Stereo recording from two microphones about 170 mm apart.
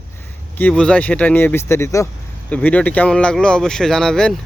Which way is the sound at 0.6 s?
5° left (ahead or behind).